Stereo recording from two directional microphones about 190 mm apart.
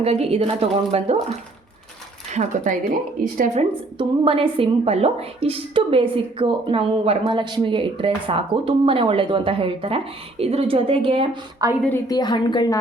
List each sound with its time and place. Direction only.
0.0 s speech: 35° right (ahead or behind)
2.3 s a woman's voice: 35° right (ahead or behind)
11.9 s a woman's voice: 20° left (ahead or behind)